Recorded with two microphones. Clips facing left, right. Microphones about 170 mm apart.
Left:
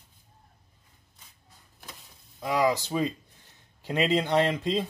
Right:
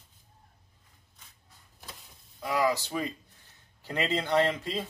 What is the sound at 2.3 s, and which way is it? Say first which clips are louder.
Speech: left 2 dB; 20° left (ahead or behind).